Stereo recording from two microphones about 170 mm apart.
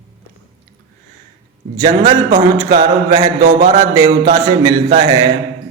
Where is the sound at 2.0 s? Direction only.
20° right (ahead or behind).